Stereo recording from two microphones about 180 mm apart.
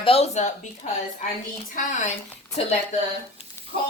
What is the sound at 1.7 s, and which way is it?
Speech, 45° left (ahead or behind).